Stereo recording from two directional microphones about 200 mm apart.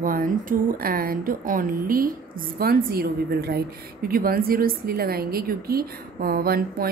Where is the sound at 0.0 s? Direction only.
45° right (ahead or behind).